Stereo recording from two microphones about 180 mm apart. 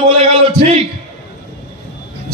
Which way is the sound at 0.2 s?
35° right (ahead or behind).